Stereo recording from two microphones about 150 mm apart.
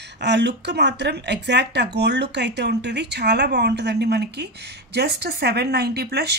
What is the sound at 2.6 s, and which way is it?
Speech, 90° right.